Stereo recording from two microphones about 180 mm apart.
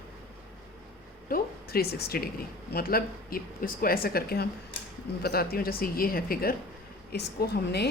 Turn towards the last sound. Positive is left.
turn(degrees=65)  # may be behind; listen again after turning